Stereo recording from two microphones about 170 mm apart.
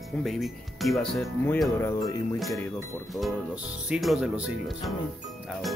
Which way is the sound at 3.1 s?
5° right (ahead or behind).